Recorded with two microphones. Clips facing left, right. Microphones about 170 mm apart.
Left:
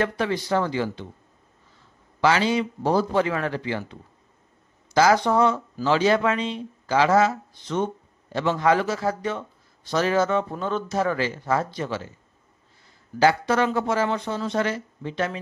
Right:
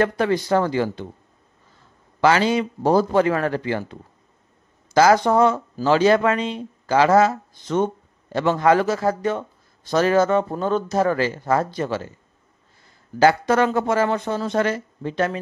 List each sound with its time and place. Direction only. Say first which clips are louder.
0.0 s speech: right 5 dB; 45° right (ahead or behind)
2.2 s speech: right 3 dB; 45° right (ahead or behind)
13.2 s speech: right 3 dB; 50° right (ahead or behind)